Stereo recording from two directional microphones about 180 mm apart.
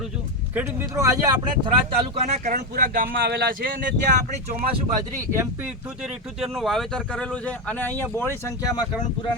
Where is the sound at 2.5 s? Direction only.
50° right (ahead or behind).